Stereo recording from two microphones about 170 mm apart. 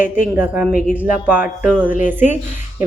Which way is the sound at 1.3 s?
5° right (ahead or behind).